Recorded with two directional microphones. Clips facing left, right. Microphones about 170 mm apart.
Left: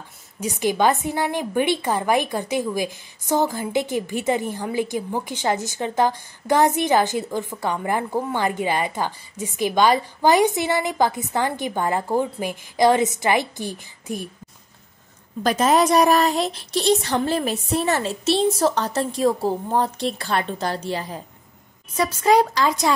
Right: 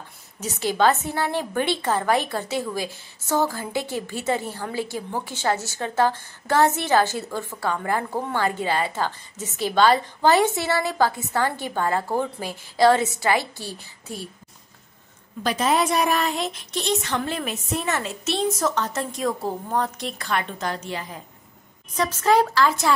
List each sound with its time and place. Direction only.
0.4 s a woman's voice: 15° left (ahead or behind)
15.4 s a woman's voice: 45° left (ahead or behind)
21.9 s a woman's voice: 10° left (ahead or behind)